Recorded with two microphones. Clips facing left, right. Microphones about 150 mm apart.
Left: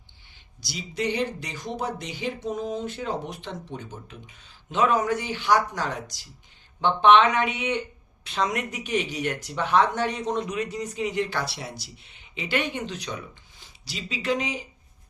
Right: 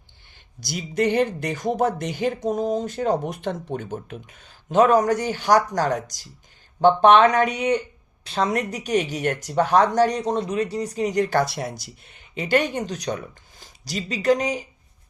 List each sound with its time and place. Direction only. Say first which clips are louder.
0.6 s speech: right 6 dB; 50° right (ahead or behind)